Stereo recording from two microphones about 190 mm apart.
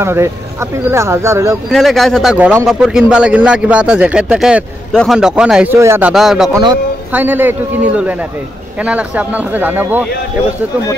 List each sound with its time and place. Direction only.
0.0 s speech: 15° right (ahead or behind)
1.7 s speech: centre (ahead or behind)
6.5 s a man's voice: 20° right (ahead or behind)
7.1 s speech: 10° right (ahead or behind)